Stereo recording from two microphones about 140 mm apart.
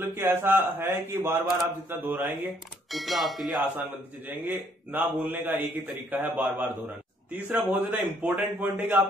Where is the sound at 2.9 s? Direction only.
Centre (ahead or behind).